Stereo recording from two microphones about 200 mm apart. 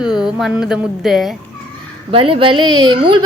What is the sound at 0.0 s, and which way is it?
Music, centre (ahead or behind).